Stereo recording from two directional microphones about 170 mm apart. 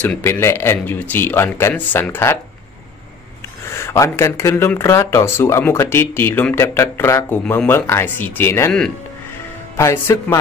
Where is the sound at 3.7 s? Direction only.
15° left (ahead or behind).